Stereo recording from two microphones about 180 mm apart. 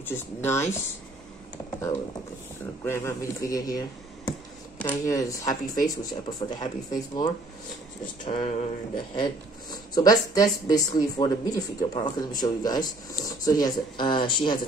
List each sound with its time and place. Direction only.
0.0 s speech: 10° left (ahead or behind)
2.8 s speech: 15° left (ahead or behind); by 8.5 s 35° left (ahead or behind)
9.1 s speech: 25° left (ahead or behind)